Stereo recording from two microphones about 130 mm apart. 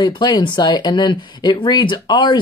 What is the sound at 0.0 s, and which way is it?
Speech, 35° left (ahead or behind).